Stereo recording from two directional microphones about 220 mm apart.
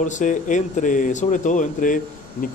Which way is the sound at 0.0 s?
35° left (ahead or behind).